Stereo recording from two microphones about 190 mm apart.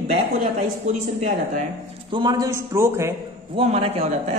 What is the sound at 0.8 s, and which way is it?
Speech, 35° right (ahead or behind).